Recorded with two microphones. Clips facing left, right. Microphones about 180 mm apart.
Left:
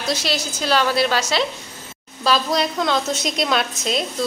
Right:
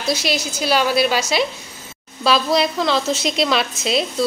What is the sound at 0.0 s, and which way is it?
A woman's voice, 10° right (ahead or behind).